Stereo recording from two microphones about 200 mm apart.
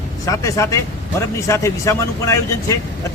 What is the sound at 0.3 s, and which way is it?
A man's voice, 15° left (ahead or behind).